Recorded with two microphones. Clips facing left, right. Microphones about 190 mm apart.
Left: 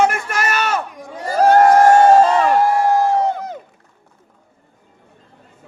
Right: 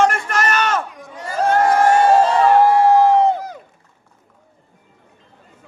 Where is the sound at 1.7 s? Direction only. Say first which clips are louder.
Left 4 dB; 45° left (ahead or behind).